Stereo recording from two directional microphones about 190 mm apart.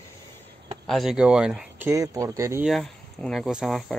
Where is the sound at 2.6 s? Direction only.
Centre (ahead or behind).